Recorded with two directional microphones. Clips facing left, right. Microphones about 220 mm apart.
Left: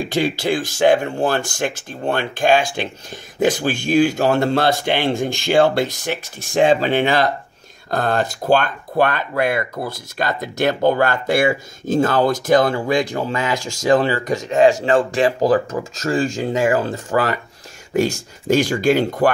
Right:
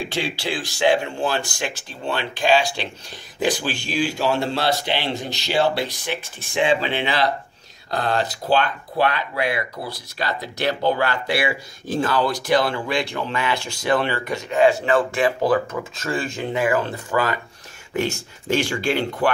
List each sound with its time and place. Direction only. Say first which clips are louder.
0.1 s speech: left 7 dB; 45° left (ahead or behind)
18.5 s speech: left 6 dB; 40° left (ahead or behind)